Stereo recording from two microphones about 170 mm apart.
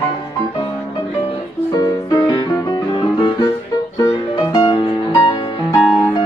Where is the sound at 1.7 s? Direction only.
25° left (ahead or behind).